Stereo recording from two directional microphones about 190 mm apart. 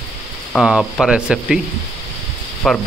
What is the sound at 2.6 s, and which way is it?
Speech, centre (ahead or behind).